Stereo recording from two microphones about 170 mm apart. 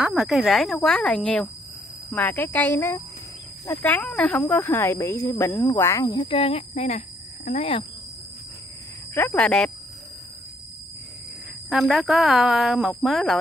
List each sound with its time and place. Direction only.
0.0 s speech: centre (ahead or behind); by 7.8 s 35° left (ahead or behind)
9.1 s speech: 10° left (ahead or behind)
11.7 s speech: centre (ahead or behind)